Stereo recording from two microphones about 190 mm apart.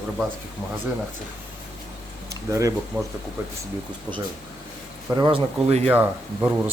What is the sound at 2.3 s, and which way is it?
Speech, 15° right (ahead or behind).